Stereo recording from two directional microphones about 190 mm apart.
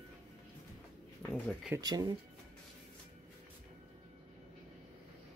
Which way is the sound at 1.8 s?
20° right (ahead or behind).